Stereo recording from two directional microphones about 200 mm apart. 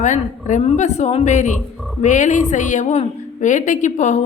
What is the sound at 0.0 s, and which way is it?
A woman's voice, 35° left (ahead or behind).